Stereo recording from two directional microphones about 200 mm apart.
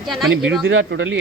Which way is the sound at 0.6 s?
65° right (ahead or behind).